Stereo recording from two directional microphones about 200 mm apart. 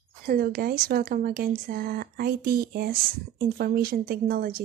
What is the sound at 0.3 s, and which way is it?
Speech, 50° right (ahead or behind).